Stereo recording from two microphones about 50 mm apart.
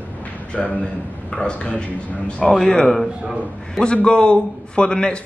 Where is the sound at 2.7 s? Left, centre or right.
Centre.